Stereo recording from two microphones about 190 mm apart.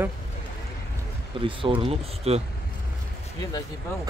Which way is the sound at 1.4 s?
25° right (ahead or behind).